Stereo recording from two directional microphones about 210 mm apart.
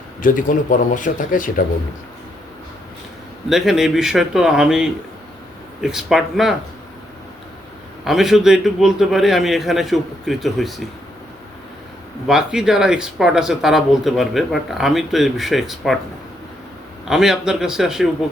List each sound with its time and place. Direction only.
0.2 s speech: 40° left (ahead or behind)
3.5 s speech: centre (ahead or behind)
8.0 s speech: centre (ahead or behind)
12.3 s speech: 5° right (ahead or behind)
17.1 s speech: centre (ahead or behind)